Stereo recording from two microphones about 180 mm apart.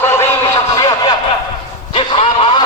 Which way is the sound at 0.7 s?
25° left (ahead or behind).